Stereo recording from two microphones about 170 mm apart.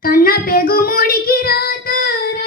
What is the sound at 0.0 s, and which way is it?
Child singing, 60° left (ahead or behind).